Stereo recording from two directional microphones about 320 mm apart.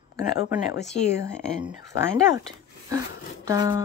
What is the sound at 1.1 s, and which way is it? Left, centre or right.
Speech, centre.